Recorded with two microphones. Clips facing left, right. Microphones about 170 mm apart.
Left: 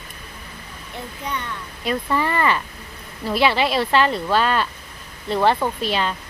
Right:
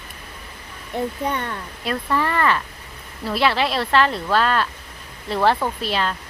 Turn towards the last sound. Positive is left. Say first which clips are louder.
# left 1 dB
turn(degrees=0)  # may be behind; listen again after turning